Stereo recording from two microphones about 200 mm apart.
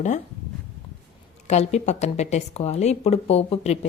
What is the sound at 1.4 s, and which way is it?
A woman's voice, 35° left (ahead or behind).